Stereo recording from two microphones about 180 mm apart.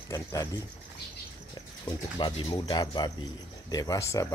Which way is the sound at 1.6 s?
20° left (ahead or behind).